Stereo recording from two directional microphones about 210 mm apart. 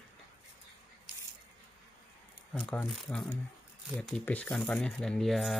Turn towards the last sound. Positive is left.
turn(degrees=0)  # may be behind; listen again after turning